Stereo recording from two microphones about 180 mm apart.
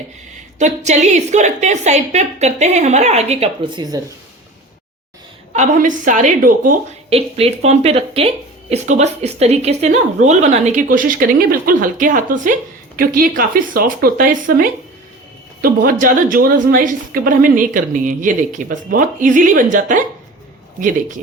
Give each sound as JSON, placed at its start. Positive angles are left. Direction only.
{"t": 0.6, "sound": "a woman's voice", "side_deg": -40}
{"t": 5.5, "sound": "a woman's voice", "side_deg": -45}
{"t": 7.1, "sound": "a woman's voice", "side_deg": -35}